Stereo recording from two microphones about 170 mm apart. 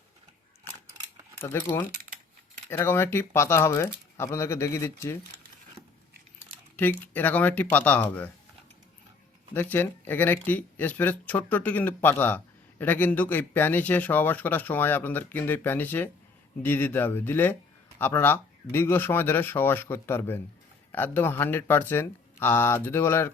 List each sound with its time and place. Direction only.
1.4 s speech: 15° left (ahead or behind)
2.6 s speech: 15° left (ahead or behind)
6.7 s speech: 10° left (ahead or behind)
9.6 s speech: 10° left (ahead or behind)